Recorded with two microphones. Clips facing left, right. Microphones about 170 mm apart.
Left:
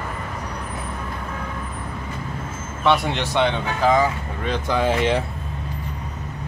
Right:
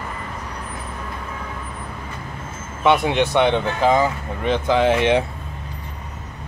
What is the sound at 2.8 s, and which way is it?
Speech, 15° right (ahead or behind).